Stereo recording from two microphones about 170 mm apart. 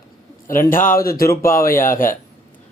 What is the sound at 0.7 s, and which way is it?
Speech, 55° left (ahead or behind).